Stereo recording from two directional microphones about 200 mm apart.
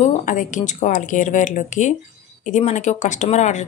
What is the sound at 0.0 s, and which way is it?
A woman's voice, 40° left (ahead or behind).